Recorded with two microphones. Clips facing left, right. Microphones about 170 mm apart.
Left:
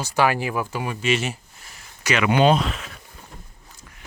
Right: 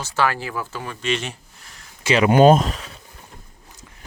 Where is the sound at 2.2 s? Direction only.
45° right (ahead or behind).